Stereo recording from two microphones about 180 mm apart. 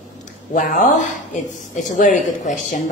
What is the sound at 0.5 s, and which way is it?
Speech, 45° left (ahead or behind).